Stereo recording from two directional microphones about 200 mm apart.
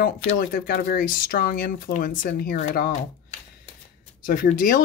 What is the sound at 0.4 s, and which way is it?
Speech, 50° left (ahead or behind).